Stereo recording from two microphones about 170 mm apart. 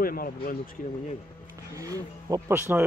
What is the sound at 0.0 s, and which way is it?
Speech, 60° left (ahead or behind).